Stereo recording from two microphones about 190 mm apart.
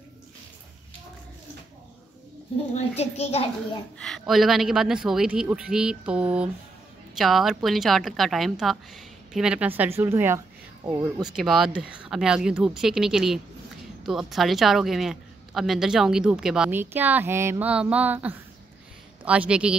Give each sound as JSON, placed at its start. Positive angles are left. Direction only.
{"t": 3.0, "sound": "a child's voice", "side_deg": 35}
{"t": 4.0, "sound": "a man's voice", "side_deg": 0}
{"t": 11.2, "sound": "a man's voice", "side_deg": 0}